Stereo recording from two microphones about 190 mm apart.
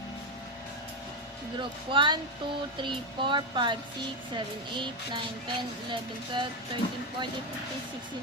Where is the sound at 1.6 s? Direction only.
25° right (ahead or behind).